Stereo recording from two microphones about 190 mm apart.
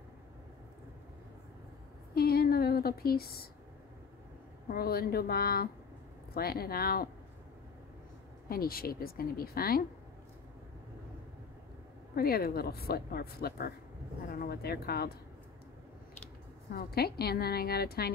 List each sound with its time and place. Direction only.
2.1 s a sound: 55° left (ahead or behind)
4.6 s a woman's voice: 55° left (ahead or behind)
8.5 s a woman's voice: 50° left (ahead or behind)
12.2 s a woman's voice: 55° left (ahead or behind)
16.7 s a woman's voice: 55° left (ahead or behind)